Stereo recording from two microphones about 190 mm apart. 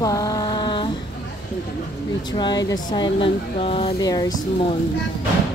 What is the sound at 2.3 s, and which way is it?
Speech, 20° left (ahead or behind).